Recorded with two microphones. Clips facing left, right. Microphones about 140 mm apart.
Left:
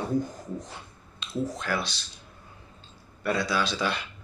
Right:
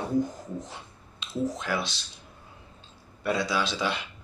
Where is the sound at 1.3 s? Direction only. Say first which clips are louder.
Right 1 dB; 20° right (ahead or behind).